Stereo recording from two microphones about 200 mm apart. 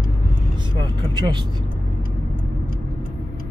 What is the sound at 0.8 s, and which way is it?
Vehicle, 20° right (ahead or behind).